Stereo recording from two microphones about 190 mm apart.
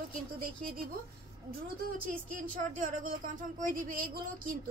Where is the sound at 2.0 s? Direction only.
45° right (ahead or behind).